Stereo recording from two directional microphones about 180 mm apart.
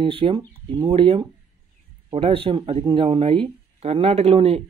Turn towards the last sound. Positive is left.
turn(degrees=-35)  # may be behind; listen again after turning